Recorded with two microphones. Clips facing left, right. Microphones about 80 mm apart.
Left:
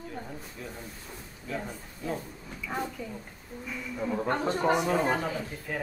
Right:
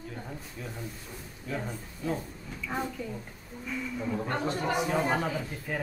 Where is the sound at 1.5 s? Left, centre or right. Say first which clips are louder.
Right 1 dB; centre.